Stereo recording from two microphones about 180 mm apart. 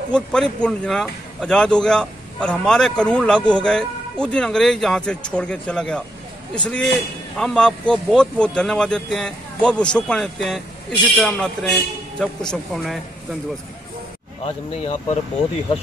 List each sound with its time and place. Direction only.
0.1 s speech: 5° left (ahead or behind)
14.4 s speech: 40° left (ahead or behind)